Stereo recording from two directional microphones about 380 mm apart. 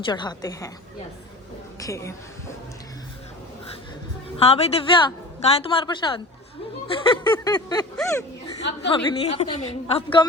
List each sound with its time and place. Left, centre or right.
0.0 s a woman's voice: centre
1.8 s a woman's voice: centre
4.4 s a woman's voice: centre